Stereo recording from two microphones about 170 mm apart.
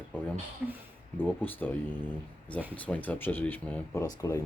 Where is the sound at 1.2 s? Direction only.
10° left (ahead or behind).